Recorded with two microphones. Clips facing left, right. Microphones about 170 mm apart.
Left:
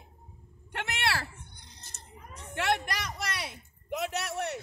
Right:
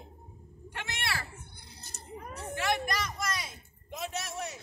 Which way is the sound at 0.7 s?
65° left (ahead or behind).